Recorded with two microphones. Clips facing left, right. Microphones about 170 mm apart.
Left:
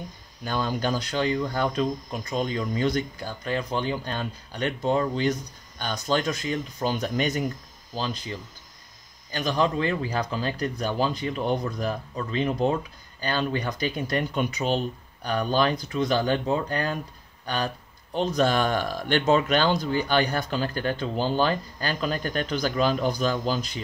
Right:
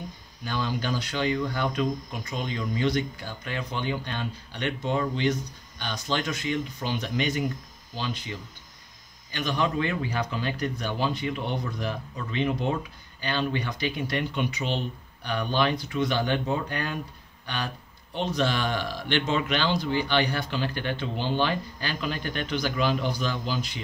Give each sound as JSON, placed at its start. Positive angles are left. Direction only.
{"t": 0.5, "sound": "speech", "side_deg": 45}
{"t": 18.1, "sound": "speech", "side_deg": 40}